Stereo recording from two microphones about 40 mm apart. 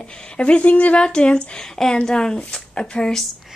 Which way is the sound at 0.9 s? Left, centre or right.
Left.